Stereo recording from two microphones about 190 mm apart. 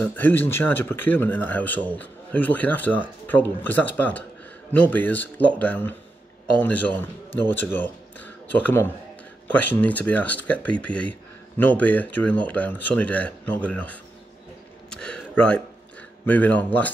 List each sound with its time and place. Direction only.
0.0 s a man's voice: 10° left (ahead or behind)
14.9 s a sound: 5° left (ahead or behind)
16.3 s speech: 10° left (ahead or behind)